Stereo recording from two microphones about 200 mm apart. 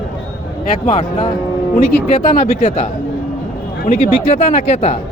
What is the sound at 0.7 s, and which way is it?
Speech, 40° left (ahead or behind).